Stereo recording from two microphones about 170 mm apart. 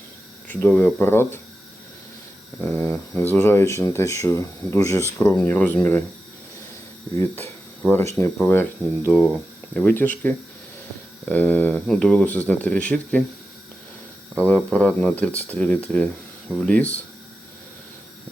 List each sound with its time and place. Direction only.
0.4 s speech: 10° left (ahead or behind)
2.6 s speech: 10° left (ahead or behind)
7.2 s speech: 10° left (ahead or behind)
14.3 s speech: 10° left (ahead or behind)